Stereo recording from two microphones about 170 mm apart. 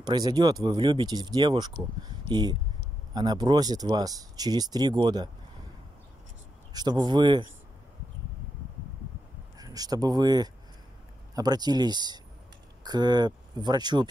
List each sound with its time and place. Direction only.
0.0 s speech: 25° right (ahead or behind)
6.7 s speech: 25° right (ahead or behind)
9.6 s speech: 20° right (ahead or behind)